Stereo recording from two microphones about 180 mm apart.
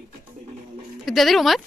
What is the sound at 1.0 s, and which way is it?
Speech, centre (ahead or behind).